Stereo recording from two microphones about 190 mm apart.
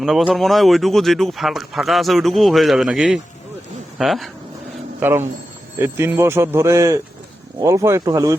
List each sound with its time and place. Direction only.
0.0 s speech: centre (ahead or behind)
4.9 s speech: 10° right (ahead or behind)